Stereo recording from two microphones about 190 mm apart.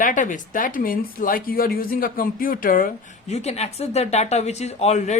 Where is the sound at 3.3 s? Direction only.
35° left (ahead or behind).